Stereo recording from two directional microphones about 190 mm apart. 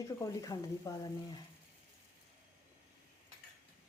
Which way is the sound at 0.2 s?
20° left (ahead or behind).